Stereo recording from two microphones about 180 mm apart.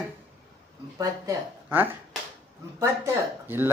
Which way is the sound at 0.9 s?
15° right (ahead or behind).